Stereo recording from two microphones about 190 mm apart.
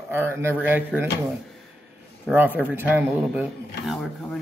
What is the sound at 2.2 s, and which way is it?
Speech, 10° right (ahead or behind).